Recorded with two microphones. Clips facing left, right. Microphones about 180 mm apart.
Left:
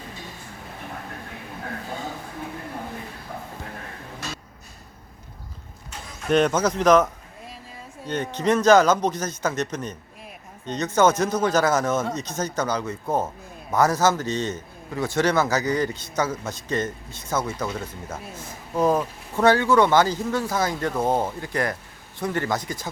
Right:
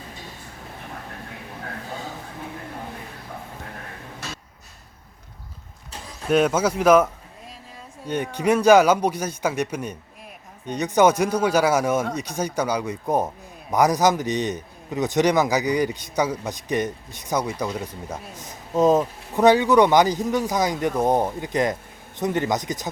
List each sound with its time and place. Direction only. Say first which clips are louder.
6.2 s a man's voice: right 1 dB; 5° right (ahead or behind)